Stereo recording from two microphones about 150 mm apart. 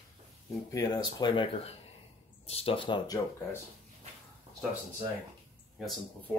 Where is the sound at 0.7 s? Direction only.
25° left (ahead or behind).